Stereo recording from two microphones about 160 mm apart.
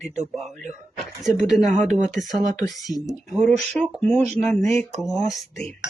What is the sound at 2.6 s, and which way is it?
Speech, 20° left (ahead or behind).